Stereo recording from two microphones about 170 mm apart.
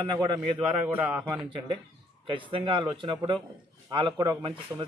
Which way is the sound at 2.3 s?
30° right (ahead or behind).